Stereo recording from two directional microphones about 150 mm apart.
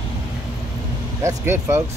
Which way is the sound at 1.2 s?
20° right (ahead or behind).